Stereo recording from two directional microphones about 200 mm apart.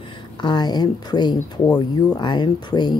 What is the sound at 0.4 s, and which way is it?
Speech, 20° left (ahead or behind).